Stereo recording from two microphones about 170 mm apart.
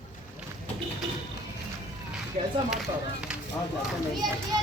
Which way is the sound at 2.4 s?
40° right (ahead or behind).